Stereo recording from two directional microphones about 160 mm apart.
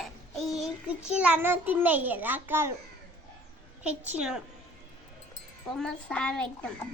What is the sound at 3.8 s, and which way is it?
Speech, 10° right (ahead or behind).